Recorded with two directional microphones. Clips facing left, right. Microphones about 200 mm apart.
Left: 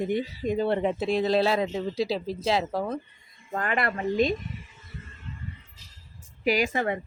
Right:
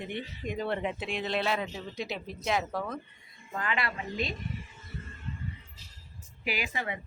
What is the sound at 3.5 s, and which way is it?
Speech, 50° left (ahead or behind).